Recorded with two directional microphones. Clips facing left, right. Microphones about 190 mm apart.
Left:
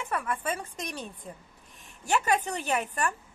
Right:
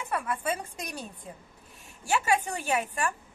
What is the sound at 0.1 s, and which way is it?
A woman's voice, 10° right (ahead or behind).